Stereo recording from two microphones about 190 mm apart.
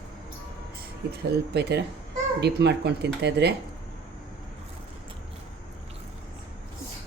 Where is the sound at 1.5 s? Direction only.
60° right (ahead or behind).